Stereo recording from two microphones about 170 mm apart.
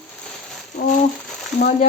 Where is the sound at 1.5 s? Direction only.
45° left (ahead or behind).